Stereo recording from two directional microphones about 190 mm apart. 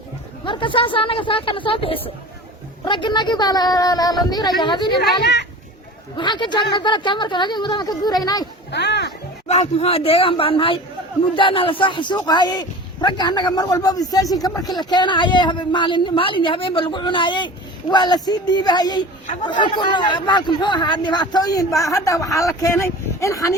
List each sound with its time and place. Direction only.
0.4 s a man's voice: 25° left (ahead or behind)
5.2 s a child's voice: 60° left (ahead or behind)
6.1 s a man's voice: 25° left (ahead or behind)
8.7 s speech: 65° left (ahead or behind)
9.5 s a man's voice: 35° left (ahead or behind); by 23.6 s 15° left (ahead or behind)